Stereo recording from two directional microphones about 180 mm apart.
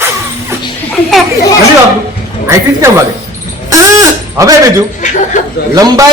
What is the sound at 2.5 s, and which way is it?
Speech, 15° right (ahead or behind).